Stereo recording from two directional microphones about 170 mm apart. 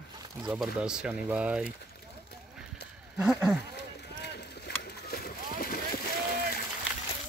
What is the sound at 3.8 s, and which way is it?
Boat, 80° left.